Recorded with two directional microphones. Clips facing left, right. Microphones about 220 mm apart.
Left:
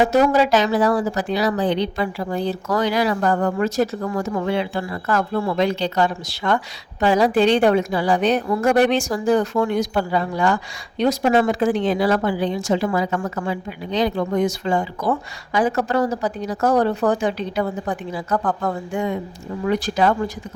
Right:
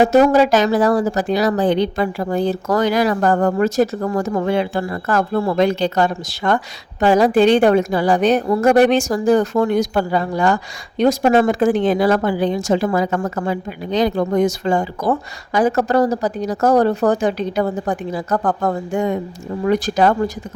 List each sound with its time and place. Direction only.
0.0 s a woman's voice: 45° right (ahead or behind)